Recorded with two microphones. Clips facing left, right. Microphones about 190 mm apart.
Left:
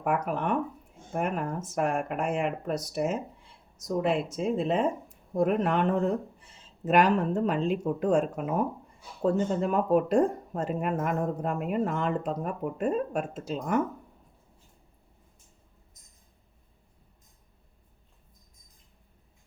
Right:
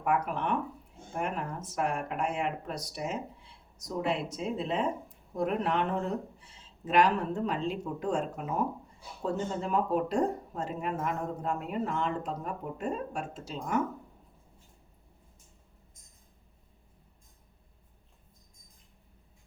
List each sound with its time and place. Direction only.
0.0 s speech: 50° left (ahead or behind)